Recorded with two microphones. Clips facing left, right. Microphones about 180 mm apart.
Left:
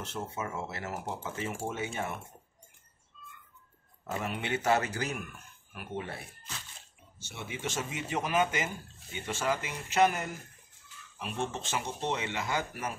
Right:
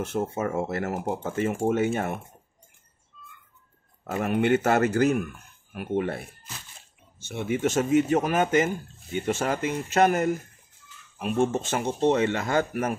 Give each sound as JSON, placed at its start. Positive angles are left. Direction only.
{"t": 0.0, "sound": "speech", "side_deg": -50}
{"t": 4.1, "sound": "speech", "side_deg": -55}